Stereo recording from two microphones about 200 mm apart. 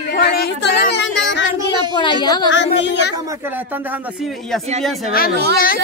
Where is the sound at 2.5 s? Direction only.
65° left (ahead or behind).